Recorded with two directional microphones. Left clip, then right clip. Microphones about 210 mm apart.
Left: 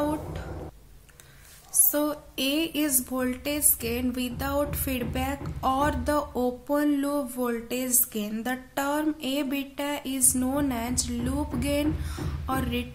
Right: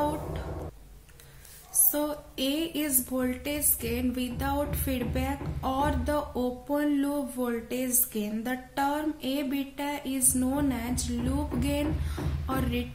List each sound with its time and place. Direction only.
1.9 s speech: 35° left (ahead or behind)